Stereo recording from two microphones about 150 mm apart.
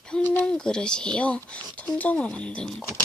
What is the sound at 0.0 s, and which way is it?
Speech, 10° left (ahead or behind).